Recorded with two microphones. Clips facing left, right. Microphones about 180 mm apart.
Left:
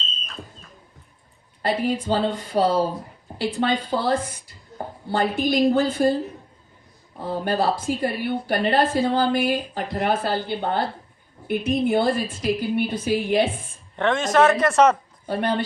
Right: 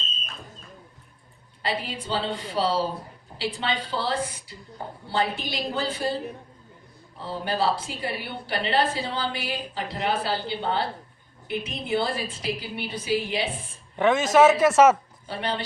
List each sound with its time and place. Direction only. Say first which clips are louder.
1.6 s a woman's voice: left 7 dB; 50° left (ahead or behind)
7.3 s a woman's voice: left 3 dB; 50° left (ahead or behind)
13.9 s speech: right 1 dB; 5° right (ahead or behind)
15.3 s a woman's voice: left 6 dB; 50° left (ahead or behind)